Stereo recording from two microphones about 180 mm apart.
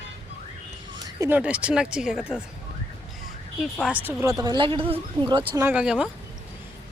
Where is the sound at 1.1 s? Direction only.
15° right (ahead or behind).